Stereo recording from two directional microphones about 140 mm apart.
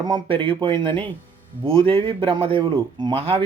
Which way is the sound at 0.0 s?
35° right (ahead or behind).